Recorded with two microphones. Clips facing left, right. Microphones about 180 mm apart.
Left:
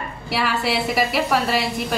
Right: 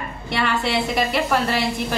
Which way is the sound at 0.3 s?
5° left (ahead or behind).